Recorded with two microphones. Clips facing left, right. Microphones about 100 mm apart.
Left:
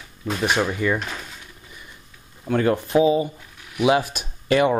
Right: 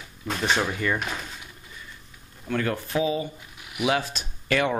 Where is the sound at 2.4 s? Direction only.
25° left (ahead or behind).